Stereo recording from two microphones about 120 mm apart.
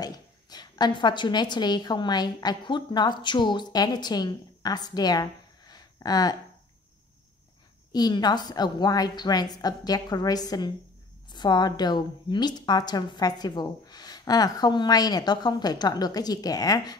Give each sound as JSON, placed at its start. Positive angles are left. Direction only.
{"t": 0.0, "sound": "a woman's voice", "side_deg": 35}
{"t": 7.9, "sound": "a woman's voice", "side_deg": 35}